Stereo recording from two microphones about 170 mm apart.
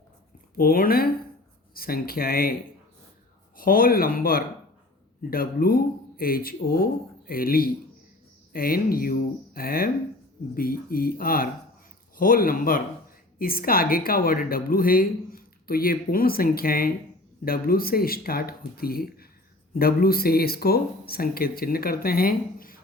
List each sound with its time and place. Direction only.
0.5 s a woman's voice: 60° left (ahead or behind)
3.6 s a woman's voice: 60° left (ahead or behind)